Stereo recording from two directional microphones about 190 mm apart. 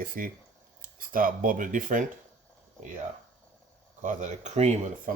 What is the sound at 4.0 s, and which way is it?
Speech, 40° right (ahead or behind).